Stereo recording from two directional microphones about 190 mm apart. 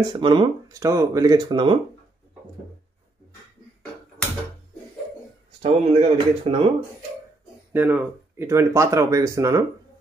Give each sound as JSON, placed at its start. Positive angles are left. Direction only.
{"t": 0.1, "sound": "speech", "side_deg": -25}
{"t": 5.6, "sound": "speech", "side_deg": -35}
{"t": 7.7, "sound": "speech", "side_deg": -10}